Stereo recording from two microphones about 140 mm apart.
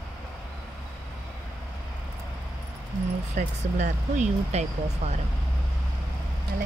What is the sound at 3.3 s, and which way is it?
Speech, 65° right (ahead or behind).